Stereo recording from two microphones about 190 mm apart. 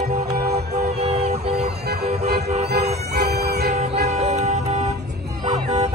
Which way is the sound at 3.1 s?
55° right (ahead or behind).